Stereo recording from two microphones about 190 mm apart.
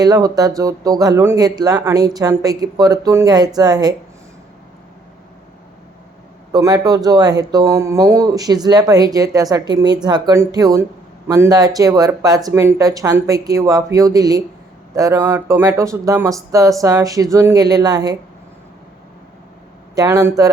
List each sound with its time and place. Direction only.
0.0 s speech: 20° right (ahead or behind)
6.5 s speech: 20° right (ahead or behind)
20.0 s speech: 15° right (ahead or behind)